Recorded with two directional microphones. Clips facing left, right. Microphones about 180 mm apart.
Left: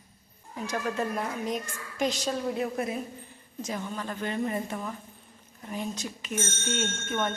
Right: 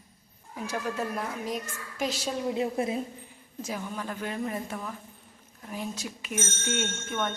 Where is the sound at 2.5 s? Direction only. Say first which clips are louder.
Right 2 dB; 25° right (ahead or behind).